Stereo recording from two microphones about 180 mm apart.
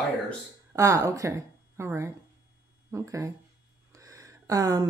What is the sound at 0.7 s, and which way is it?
Speech, 15° right (ahead or behind).